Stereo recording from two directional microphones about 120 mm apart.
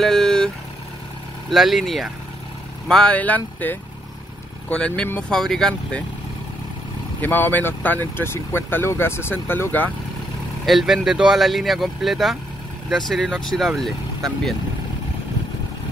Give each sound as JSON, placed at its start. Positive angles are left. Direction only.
{"t": 0.0, "sound": "vehicle", "side_deg": 5}
{"t": 1.5, "sound": "speech", "side_deg": 0}
{"t": 7.2, "sound": "speech", "side_deg": 15}
{"t": 10.6, "sound": "speech", "side_deg": 0}